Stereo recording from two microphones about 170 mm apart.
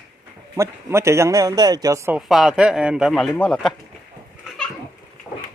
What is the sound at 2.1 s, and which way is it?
A man's voice, centre (ahead or behind).